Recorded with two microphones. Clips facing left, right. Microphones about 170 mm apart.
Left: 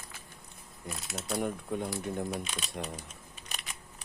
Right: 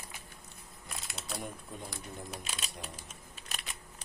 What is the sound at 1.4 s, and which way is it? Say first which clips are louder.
Speech: left 12 dB; 65° left (ahead or behind).